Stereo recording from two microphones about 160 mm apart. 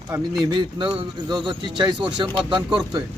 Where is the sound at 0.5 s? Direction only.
30° right (ahead or behind).